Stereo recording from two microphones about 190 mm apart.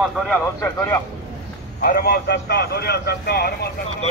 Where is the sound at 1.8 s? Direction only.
50° left (ahead or behind).